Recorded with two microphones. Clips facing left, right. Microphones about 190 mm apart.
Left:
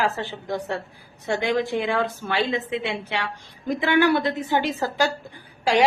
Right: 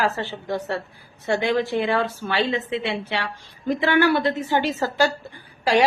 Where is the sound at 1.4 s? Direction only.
15° left (ahead or behind).